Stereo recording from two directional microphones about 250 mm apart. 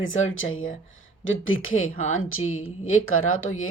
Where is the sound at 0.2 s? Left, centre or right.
Left.